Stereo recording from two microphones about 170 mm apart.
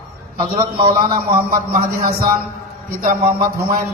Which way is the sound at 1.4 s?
55° right (ahead or behind).